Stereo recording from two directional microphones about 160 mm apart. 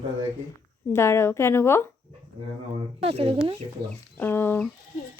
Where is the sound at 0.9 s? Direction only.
15° left (ahead or behind).